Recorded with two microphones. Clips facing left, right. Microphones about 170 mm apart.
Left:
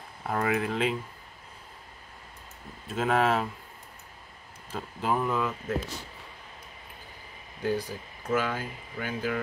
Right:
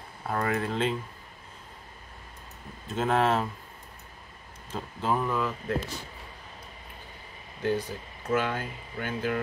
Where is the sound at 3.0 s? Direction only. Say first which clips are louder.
Even; 5° left (ahead or behind).